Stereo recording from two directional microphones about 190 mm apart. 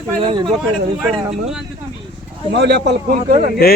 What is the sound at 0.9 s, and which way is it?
Speech, centre (ahead or behind).